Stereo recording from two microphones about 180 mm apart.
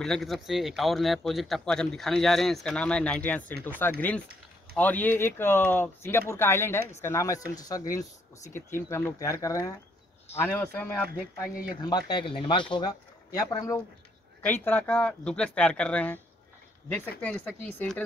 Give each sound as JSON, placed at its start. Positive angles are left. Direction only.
{"t": 0.0, "sound": "a man's voice", "side_deg": 0}
{"t": 12.1, "sound": "speech", "side_deg": 25}